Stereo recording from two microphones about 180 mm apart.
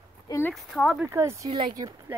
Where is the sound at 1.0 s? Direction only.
15° right (ahead or behind).